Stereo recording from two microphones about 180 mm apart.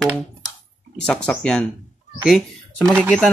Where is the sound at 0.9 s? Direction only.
5° left (ahead or behind).